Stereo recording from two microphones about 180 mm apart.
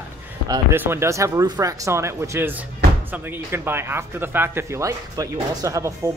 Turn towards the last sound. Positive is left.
turn(degrees=-15)  # may be behind; listen again after turning